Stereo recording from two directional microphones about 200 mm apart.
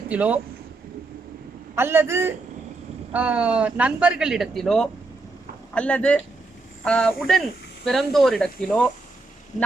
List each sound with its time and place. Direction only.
0.1 s a man's voice: 5° right (ahead or behind)
1.7 s a man's voice: 10° right (ahead or behind)
9.5 s speech: 35° left (ahead or behind)